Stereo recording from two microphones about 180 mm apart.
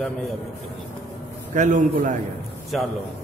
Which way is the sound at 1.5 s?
45° right (ahead or behind).